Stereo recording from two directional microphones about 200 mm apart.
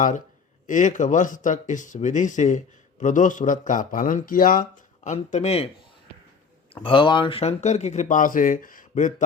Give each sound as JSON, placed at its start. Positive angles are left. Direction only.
{"t": 0.7, "sound": "speech", "side_deg": 40}
{"t": 6.8, "sound": "speech", "side_deg": 25}